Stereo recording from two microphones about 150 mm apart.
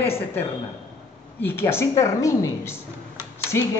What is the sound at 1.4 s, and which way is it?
A woman's voice, 15° left (ahead or behind).